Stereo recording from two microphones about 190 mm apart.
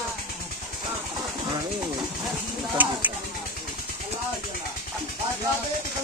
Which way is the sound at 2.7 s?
10° right (ahead or behind).